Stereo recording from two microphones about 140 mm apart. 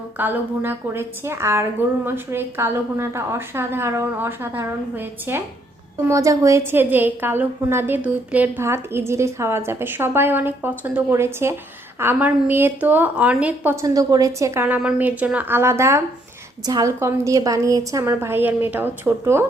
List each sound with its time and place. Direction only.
0.2 s a woman's voice: 15° right (ahead or behind)
13.8 s a woman's voice: 25° right (ahead or behind)